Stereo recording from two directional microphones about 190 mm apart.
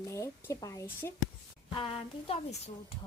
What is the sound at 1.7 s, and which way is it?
A woman's voice, 30° left (ahead or behind).